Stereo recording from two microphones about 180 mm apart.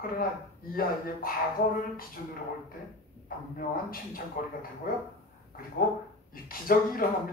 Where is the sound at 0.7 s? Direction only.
55° left (ahead or behind).